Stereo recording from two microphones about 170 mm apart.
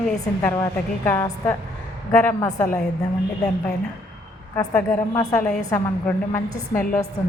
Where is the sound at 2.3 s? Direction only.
20° left (ahead or behind).